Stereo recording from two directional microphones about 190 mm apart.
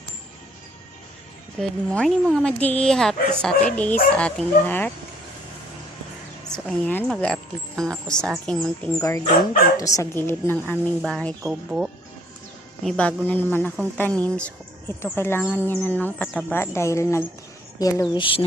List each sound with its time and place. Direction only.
1.5 s a woman's voice: 5° left (ahead or behind)
6.5 s speech: 5° left (ahead or behind)
9.0 s a woman's voice: 15° left (ahead or behind)
9.2 s speech: 40° left (ahead or behind)
9.7 s a woman's voice: 15° left (ahead or behind)
12.8 s a woman's voice: 5° left (ahead or behind); by 18.4 s 25° left (ahead or behind)